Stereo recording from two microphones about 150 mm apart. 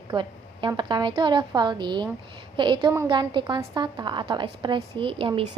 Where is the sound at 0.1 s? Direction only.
30° right (ahead or behind).